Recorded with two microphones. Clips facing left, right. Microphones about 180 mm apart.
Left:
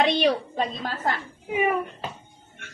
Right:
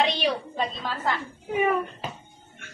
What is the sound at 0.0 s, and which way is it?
A woman's voice, 50° left (ahead or behind).